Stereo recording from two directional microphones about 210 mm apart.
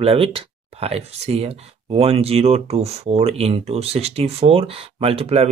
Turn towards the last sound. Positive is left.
turn(degrees=-30)  # may be behind; listen again after turning